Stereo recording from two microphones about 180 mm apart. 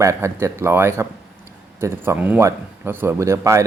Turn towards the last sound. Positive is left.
turn(degrees=-15)  # may be behind; listen again after turning